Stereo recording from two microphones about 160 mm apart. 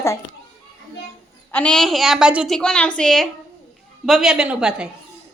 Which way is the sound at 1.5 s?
5° left (ahead or behind).